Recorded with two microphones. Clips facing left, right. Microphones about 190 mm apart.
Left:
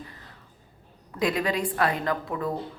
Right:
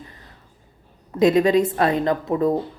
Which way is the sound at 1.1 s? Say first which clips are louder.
Right 10 dB; 25° right (ahead or behind).